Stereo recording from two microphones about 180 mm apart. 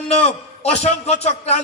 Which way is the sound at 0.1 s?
35° left (ahead or behind).